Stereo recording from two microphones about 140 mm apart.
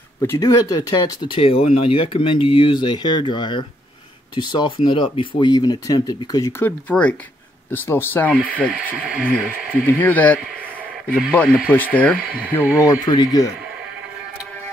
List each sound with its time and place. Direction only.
0.2 s speech: 20° left (ahead or behind)
6.6 s speech: 10° left (ahead or behind)
9.0 s speech: 10° right (ahead or behind)
9.9 s a sound: 10° left (ahead or behind)
11.3 s speech: 5° left (ahead or behind)
12.7 s speech: 25° left (ahead or behind)